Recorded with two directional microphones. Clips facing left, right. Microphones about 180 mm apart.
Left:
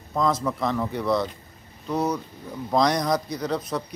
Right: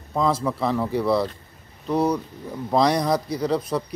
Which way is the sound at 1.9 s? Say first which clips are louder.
Right 4 dB; 30° right (ahead or behind).